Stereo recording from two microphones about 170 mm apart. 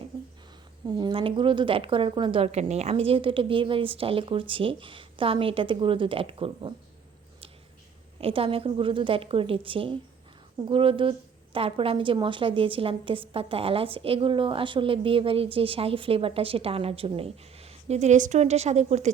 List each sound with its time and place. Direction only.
0.9 s a woman's voice: 25° right (ahead or behind)
8.2 s a woman's voice: 35° right (ahead or behind)